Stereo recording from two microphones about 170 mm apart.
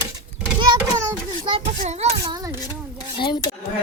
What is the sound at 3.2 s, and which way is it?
Dishes, 25° left (ahead or behind).